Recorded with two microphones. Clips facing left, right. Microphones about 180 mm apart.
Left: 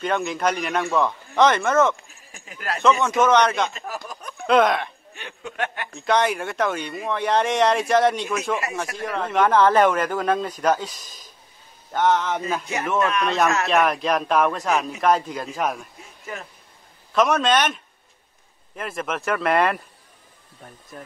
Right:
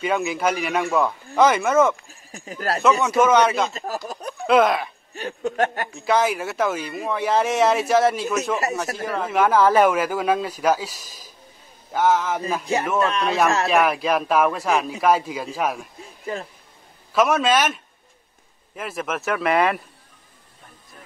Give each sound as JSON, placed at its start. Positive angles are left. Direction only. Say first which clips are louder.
{"t": 0.0, "sound": "a man's voice", "louder": "right 1 dB", "side_deg": -5}
{"t": 2.0, "sound": "speech", "louder": "right 8 dB", "side_deg": -40}
{"t": 3.0, "sound": "speech", "louder": "right 2 dB", "side_deg": -5}
{"t": 3.7, "sound": "speech", "louder": "right 4 dB", "side_deg": -40}
{"t": 4.5, "sound": "speech", "louder": "right 1 dB", "side_deg": -5}
{"t": 5.1, "sound": "speech", "louder": "right 13 dB", "side_deg": -40}
{"t": 5.9, "sound": "a man's voice", "louder": "even", "side_deg": -5}
{"t": 13.0, "sound": "speech", "louder": "even", "side_deg": -30}
{"t": 13.7, "sound": "speech", "louder": "right 1 dB", "side_deg": -5}
{"t": 16.3, "sound": "speech", "louder": "right 6 dB", "side_deg": -30}
{"t": 17.1, "sound": "speech", "louder": "right 1 dB", "side_deg": -5}